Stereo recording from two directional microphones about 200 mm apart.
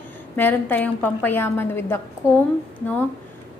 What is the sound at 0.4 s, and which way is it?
A woman's voice, 10° left (ahead or behind).